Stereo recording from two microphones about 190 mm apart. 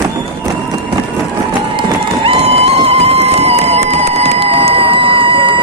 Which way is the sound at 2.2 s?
30° right (ahead or behind).